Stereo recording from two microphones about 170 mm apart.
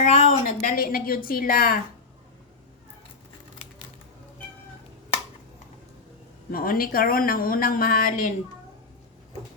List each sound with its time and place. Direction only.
0.0 s a woman's voice: 40° left (ahead or behind); by 1.8 s 60° left (ahead or behind)
6.5 s a woman's voice: 60° left (ahead or behind)